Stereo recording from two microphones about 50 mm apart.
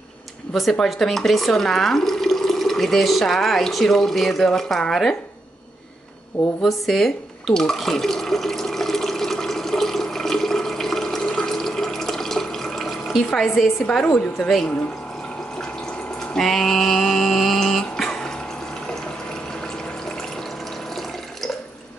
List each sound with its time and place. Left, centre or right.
0.5 s speech: centre
6.6 s speech: centre
7.5 s water: centre
13.3 s a woman's voice: centre
14.0 s speech: left
16.2 s a sound: centre